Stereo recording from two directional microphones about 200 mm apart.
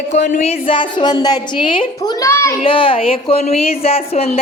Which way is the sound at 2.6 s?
25° left (ahead or behind).